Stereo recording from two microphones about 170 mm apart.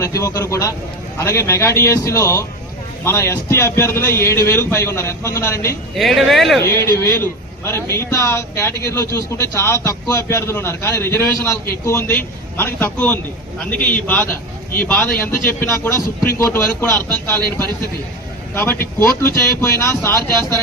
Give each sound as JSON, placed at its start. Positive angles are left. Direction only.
{"t": 0.0, "sound": "a man's voice", "side_deg": 20}
{"t": 6.0, "sound": "speech", "side_deg": 0}
{"t": 6.6, "sound": "a man's voice", "side_deg": 15}
{"t": 18.5, "sound": "a man's voice", "side_deg": 15}